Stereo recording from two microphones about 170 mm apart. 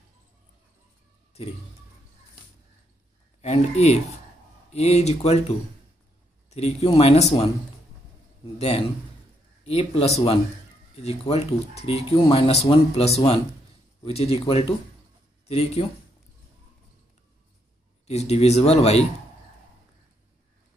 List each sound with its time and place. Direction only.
3.3 s speech: 40° left (ahead or behind)
6.5 s speech: 40° left (ahead or behind)
8.5 s speech: 35° left (ahead or behind)
18.0 s speech: 40° left (ahead or behind)